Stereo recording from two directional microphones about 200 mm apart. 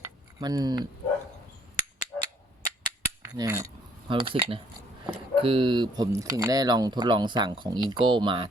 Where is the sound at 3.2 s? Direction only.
15° right (ahead or behind).